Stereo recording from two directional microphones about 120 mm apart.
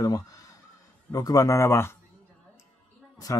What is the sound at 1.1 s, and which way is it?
Speech, 30° left (ahead or behind).